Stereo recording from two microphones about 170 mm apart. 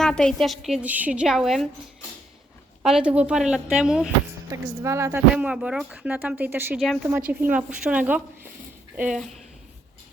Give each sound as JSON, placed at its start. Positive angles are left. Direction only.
{"t": 0.0, "sound": "a woman's voice", "side_deg": 5}
{"t": 2.8, "sound": "a woman's voice", "side_deg": -5}
{"t": 4.4, "sound": "speech", "side_deg": -15}
{"t": 5.3, "sound": "speech", "side_deg": -5}
{"t": 6.7, "sound": "a woman's voice", "side_deg": 0}